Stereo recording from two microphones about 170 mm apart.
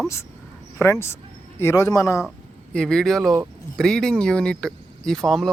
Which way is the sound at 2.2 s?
Centre (ahead or behind).